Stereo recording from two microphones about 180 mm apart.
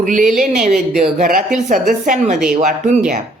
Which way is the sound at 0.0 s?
45° right (ahead or behind).